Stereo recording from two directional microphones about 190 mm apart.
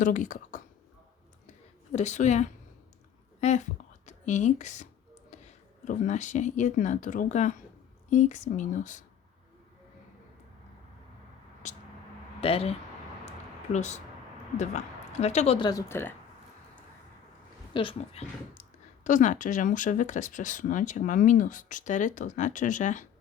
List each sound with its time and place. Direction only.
0.0 s speech: 40° left (ahead or behind)
1.9 s a woman's voice: 40° left (ahead or behind)
12.4 s speech: 30° left (ahead or behind)
13.7 s speech: 40° left (ahead or behind)
15.2 s speech: 35° left (ahead or behind); by 16.1 s 15° left (ahead or behind)
17.7 s speech: 30° left (ahead or behind)